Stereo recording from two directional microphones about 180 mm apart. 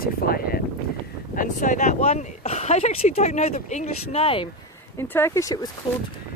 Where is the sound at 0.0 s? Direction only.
55° left (ahead or behind); by 4.4 s 30° left (ahead or behind).